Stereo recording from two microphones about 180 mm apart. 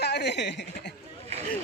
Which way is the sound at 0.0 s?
70° left (ahead or behind).